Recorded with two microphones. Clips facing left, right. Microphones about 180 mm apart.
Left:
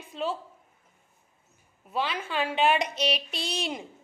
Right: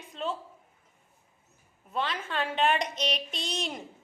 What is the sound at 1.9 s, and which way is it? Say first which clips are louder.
Speech: left 2 dB; 5° left (ahead or behind).